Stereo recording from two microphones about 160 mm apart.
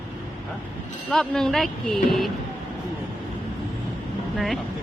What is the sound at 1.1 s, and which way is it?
Speech, 5° left (ahead or behind).